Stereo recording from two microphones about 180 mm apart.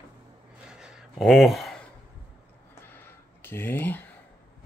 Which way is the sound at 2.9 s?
10° left (ahead or behind).